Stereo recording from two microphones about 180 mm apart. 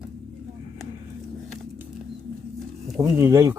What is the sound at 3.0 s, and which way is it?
Speech, 15° right (ahead or behind).